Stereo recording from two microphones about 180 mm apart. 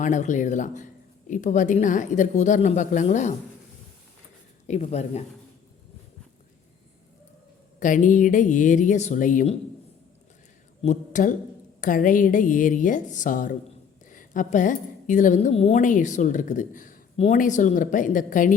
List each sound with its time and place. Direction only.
0.0 s a woman's voice: 45° left (ahead or behind)
4.6 s speech: 40° left (ahead or behind)
7.8 s a woman's voice: 45° left (ahead or behind)
10.8 s a woman's voice: 45° left (ahead or behind)